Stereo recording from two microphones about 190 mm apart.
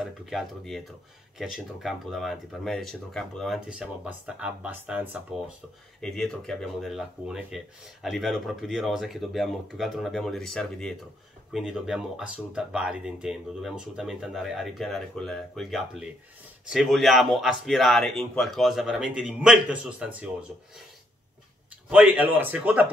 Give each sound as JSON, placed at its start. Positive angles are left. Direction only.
{"t": 0.2, "sound": "speech", "side_deg": 0}
{"t": 5.9, "sound": "speech", "side_deg": 5}
{"t": 21.9, "sound": "a man's voice", "side_deg": -5}